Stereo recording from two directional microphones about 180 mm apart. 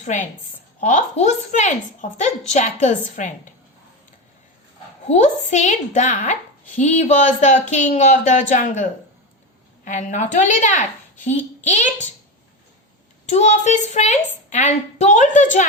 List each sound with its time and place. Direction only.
0.0 s a woman's voice: 40° left (ahead or behind)
5.0 s a woman's voice: 40° left (ahead or behind)
13.2 s a woman's voice: 40° left (ahead or behind)